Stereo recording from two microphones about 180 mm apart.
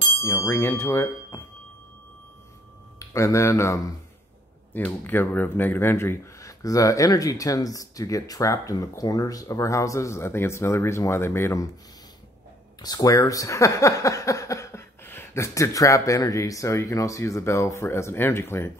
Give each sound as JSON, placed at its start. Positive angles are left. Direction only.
{"t": 0.2, "sound": "speech", "side_deg": 15}
{"t": 3.0, "sound": "speech", "side_deg": 15}
{"t": 12.8, "sound": "speech", "side_deg": 20}